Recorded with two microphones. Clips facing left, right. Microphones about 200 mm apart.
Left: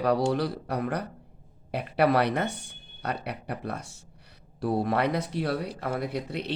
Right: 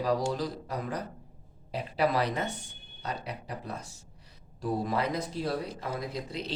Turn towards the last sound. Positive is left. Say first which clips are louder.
# left 4 dB
turn(degrees=65)  # may be behind; listen again after turning